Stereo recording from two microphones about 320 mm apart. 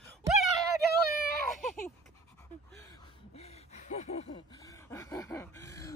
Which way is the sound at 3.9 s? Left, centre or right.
Left.